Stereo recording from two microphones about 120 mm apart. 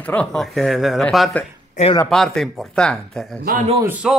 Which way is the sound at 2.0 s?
5° left (ahead or behind).